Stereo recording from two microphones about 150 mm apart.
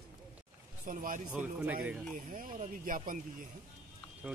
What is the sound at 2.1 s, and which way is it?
Speech, 65° right (ahead or behind).